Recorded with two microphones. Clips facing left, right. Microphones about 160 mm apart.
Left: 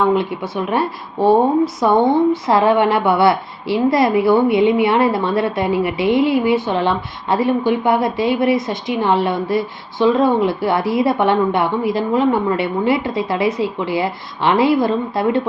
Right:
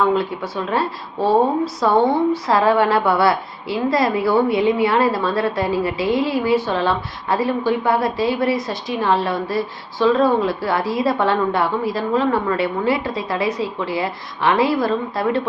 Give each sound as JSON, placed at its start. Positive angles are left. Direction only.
{"t": 0.1, "sound": "a woman's voice", "side_deg": 20}